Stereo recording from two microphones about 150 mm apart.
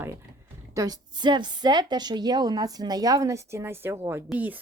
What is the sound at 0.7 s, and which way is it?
A woman's voice, 25° right (ahead or behind).